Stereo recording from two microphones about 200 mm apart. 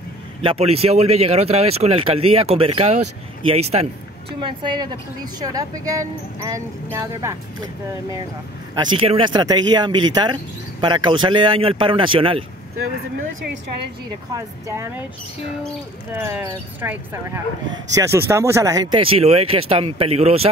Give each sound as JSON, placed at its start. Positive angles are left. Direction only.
{"t": 0.4, "sound": "speech", "side_deg": -30}
{"t": 8.7, "sound": "speech", "side_deg": -25}
{"t": 14.3, "sound": "speech", "side_deg": -15}
{"t": 16.1, "sound": "speech", "side_deg": -10}